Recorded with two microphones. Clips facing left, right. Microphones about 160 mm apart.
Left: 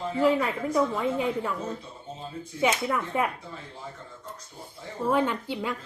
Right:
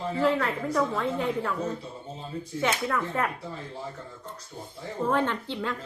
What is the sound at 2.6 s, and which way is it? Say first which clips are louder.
Speech: left 2 dB; 15° left (ahead or behind).